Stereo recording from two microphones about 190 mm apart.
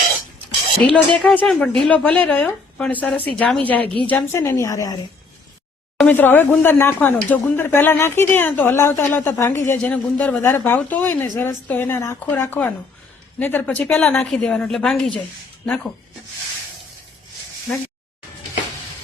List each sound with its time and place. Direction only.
0.9 s speech: centre (ahead or behind)
6.0 s a woman's voice: 10° left (ahead or behind)